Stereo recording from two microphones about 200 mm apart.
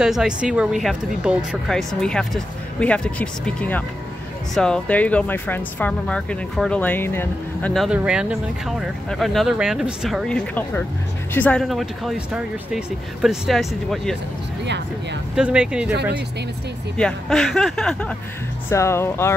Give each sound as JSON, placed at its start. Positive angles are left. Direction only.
{"t": 0.0, "sound": "speech", "side_deg": -5}
{"t": 7.7, "sound": "speech", "side_deg": 0}
{"t": 15.3, "sound": "speech", "side_deg": -5}
{"t": 15.9, "sound": "speech", "side_deg": -55}
{"t": 16.9, "sound": "speech", "side_deg": 5}